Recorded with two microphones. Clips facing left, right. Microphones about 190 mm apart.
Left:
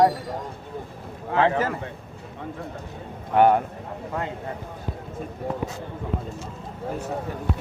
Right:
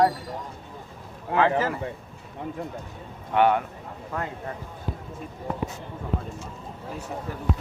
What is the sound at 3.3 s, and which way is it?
Speech, 40° left (ahead or behind).